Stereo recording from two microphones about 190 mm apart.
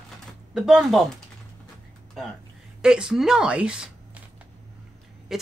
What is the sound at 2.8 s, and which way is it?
Speech, 5° right (ahead or behind).